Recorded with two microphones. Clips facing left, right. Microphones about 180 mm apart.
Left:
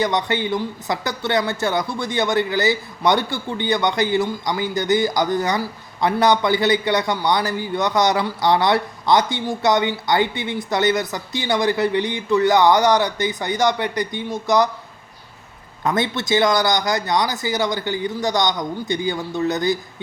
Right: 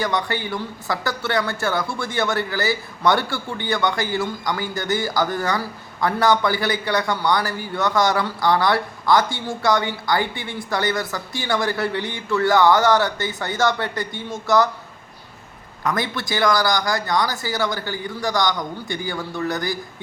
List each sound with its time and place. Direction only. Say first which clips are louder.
0.0 s speech: left 3 dB; 20° left (ahead or behind)
15.8 s speech: left 3 dB; 25° left (ahead or behind)